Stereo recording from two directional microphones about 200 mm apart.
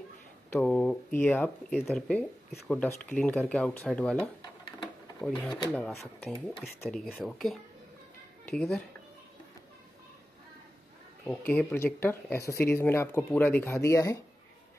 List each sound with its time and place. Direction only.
0.5 s speech: 5° left (ahead or behind)
11.2 s speech: 10° left (ahead or behind)